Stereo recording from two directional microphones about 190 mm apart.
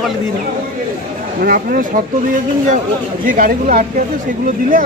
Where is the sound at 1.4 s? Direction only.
50° right (ahead or behind).